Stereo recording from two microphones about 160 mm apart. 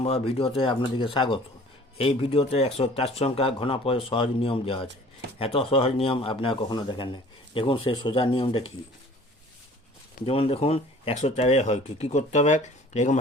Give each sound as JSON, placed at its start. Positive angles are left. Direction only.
{"t": 0.0, "sound": "speech", "side_deg": 35}
{"t": 10.2, "sound": "speech", "side_deg": 35}